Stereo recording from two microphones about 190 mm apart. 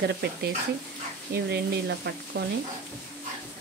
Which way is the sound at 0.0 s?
60° right (ahead or behind).